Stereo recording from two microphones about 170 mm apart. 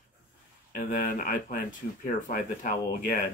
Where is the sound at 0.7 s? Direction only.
55° left (ahead or behind).